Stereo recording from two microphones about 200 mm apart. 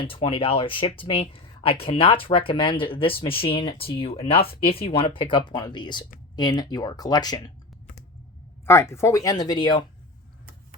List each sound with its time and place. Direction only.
0.0 s speech: 25° left (ahead or behind)
8.6 s speech: 15° left (ahead or behind)